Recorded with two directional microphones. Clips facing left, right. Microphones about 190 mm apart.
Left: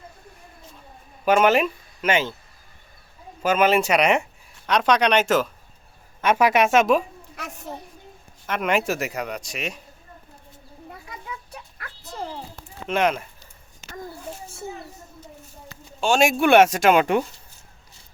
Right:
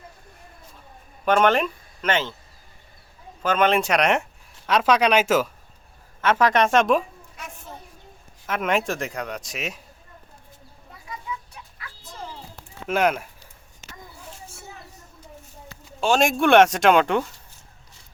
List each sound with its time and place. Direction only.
1.2 s speech: 5° left (ahead or behind)
3.4 s speech: 5° left (ahead or behind)
6.2 s speech: 10° left (ahead or behind)
7.3 s children playing: 70° left (ahead or behind)
8.4 s speech: centre (ahead or behind)
12.9 s speech: 5° right (ahead or behind)
16.0 s speech: centre (ahead or behind)